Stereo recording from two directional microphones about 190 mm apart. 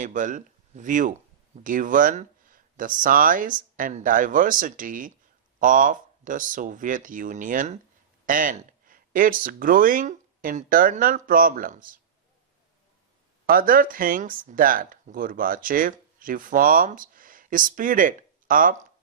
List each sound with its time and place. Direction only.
0.0 s speech: 45° right (ahead or behind)
13.5 s speech: 45° right (ahead or behind)